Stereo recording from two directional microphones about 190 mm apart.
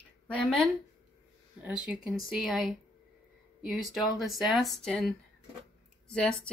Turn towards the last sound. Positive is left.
turn(degrees=5)  # may be behind; listen again after turning